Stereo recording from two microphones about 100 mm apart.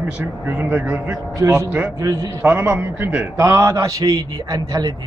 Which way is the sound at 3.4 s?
30° right (ahead or behind).